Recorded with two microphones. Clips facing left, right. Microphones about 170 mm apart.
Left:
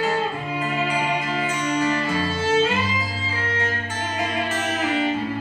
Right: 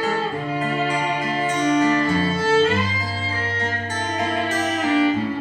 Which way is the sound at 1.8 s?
40° right (ahead or behind).